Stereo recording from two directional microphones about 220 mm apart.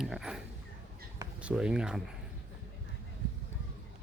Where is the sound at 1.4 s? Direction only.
5° right (ahead or behind).